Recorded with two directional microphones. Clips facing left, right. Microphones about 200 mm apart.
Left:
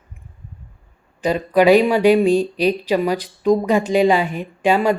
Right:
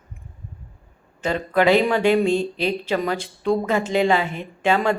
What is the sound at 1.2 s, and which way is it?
Speech, 15° left (ahead or behind).